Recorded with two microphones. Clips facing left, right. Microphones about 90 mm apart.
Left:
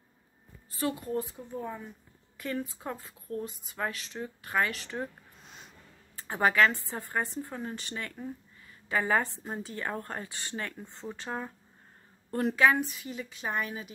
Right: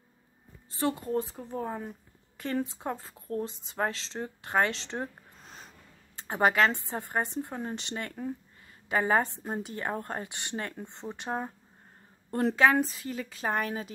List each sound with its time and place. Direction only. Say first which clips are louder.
0.7 s a woman's voice: right 2 dB; 25° right (ahead or behind)
1.3 s speech: right 3 dB; 40° right (ahead or behind)
2.3 s a woman's voice: right 3 dB; 30° right (ahead or behind)
6.2 s a woman's voice: even; 25° right (ahead or behind)
8.2 s speech: right 7 dB; 35° right (ahead or behind)
8.8 s a woman's voice: right 2 dB; 25° right (ahead or behind); by 13.9 s 45° right (ahead or behind)